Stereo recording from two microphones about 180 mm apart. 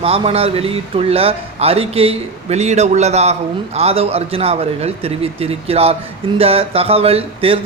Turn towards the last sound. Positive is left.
turn(degrees=-30)  # may be behind; listen again after turning